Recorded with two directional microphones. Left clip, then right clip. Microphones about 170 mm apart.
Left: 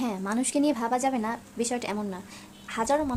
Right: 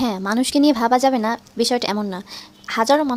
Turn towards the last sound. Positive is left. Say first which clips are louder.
# right 9 dB
turn(degrees=-45)  # may be behind; listen again after turning